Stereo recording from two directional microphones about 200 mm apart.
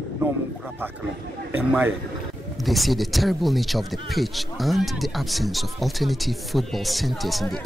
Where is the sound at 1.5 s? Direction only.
10° right (ahead or behind).